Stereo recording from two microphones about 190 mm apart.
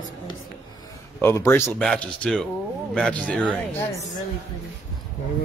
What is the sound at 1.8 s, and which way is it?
Speech, 5° left (ahead or behind).